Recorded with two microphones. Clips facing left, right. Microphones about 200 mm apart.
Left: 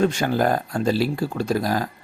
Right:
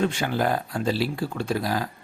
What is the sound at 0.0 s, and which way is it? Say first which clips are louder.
Speech: left 4 dB; 40° left (ahead or behind).